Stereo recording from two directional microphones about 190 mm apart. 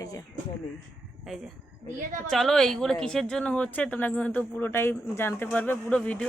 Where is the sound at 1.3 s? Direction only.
Centre (ahead or behind).